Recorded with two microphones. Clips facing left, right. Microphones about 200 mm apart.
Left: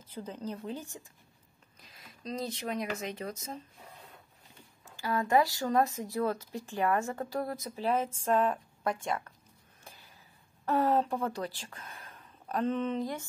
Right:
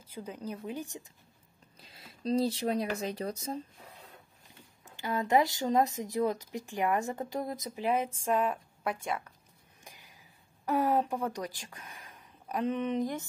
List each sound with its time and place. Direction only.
0.0 s speech: 10° right (ahead or behind)
1.8 s speech: 30° right (ahead or behind)
4.8 s a woman's voice: 20° right (ahead or behind)
9.8 s a sound: 15° right (ahead or behind)
10.6 s speech: 15° right (ahead or behind)